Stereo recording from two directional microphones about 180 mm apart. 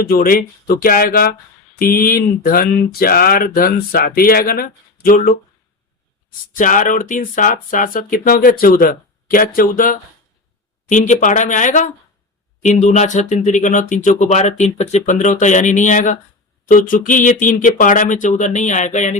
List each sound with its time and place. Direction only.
0.0 s speech: 55° left (ahead or behind)
6.6 s speech: 45° left (ahead or behind)